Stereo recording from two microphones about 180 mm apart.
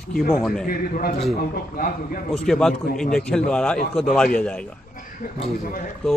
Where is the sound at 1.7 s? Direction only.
50° left (ahead or behind).